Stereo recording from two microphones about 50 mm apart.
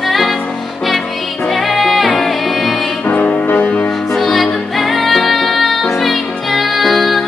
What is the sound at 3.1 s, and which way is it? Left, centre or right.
Music, left.